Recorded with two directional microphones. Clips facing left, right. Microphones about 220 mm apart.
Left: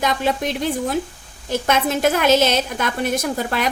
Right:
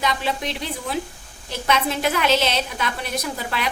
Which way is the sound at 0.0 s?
50° left (ahead or behind).